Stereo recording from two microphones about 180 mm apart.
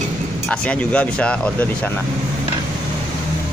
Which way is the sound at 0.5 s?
5° left (ahead or behind).